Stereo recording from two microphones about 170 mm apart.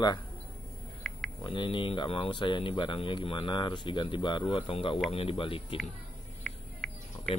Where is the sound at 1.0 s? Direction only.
5° left (ahead or behind).